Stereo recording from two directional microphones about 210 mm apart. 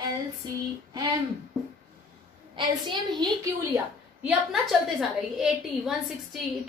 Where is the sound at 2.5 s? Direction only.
20° right (ahead or behind).